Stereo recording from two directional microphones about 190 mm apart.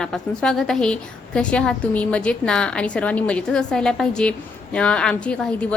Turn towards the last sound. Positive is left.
turn(degrees=5)  # may be behind; listen again after turning